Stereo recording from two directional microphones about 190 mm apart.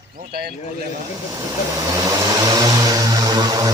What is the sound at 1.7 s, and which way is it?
Vehicle, 20° right (ahead or behind).